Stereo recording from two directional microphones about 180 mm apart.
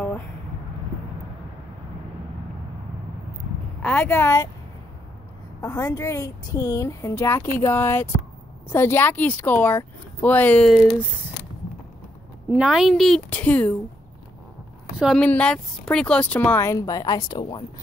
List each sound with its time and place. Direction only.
3.8 s a woman's voice: 10° left (ahead or behind)
5.6 s a woman's voice: 20° left (ahead or behind); by 11.1 s 5° right (ahead or behind)
12.4 s a woman's voice: 5° right (ahead or behind)
15.0 s a woman's voice: centre (ahead or behind); by 17.6 s 25° left (ahead or behind)